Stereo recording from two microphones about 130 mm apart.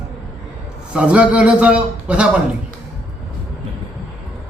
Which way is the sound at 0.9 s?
10° right (ahead or behind).